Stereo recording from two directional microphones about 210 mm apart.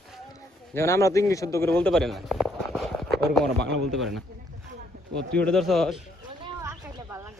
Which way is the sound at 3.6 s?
55° right (ahead or behind).